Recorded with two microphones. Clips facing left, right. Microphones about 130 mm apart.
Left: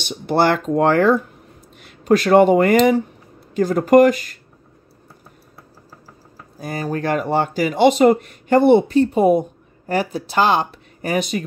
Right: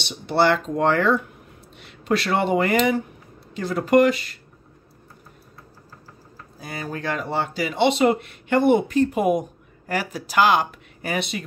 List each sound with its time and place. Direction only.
0.0 s speech: 50° left (ahead or behind)
6.6 s speech: 45° left (ahead or behind)